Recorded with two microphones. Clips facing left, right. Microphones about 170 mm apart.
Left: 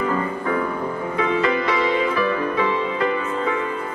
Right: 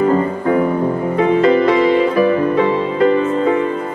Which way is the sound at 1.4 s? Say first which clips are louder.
Right 9 dB; 35° right (ahead or behind).